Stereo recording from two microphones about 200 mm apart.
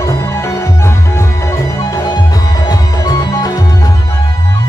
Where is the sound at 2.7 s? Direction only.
20° left (ahead or behind).